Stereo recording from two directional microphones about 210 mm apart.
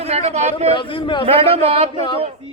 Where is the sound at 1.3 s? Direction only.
25° right (ahead or behind).